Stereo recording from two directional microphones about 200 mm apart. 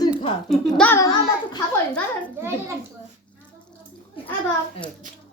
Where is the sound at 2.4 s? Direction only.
15° right (ahead or behind).